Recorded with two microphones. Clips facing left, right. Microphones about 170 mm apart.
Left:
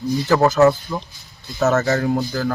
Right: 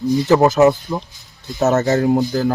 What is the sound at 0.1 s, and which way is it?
Speech, 20° right (ahead or behind).